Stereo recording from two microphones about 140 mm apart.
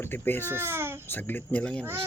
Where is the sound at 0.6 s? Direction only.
15° right (ahead or behind).